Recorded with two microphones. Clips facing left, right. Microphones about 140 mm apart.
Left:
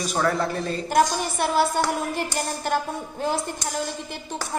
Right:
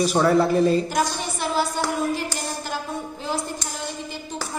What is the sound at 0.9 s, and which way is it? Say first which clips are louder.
A woman's voice: left 4 dB; 55° left (ahead or behind).